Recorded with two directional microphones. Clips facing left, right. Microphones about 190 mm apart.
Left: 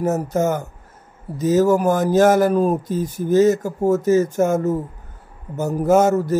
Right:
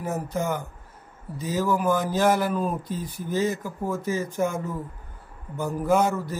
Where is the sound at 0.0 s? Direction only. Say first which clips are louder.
Left 9 dB; 45° left (ahead or behind).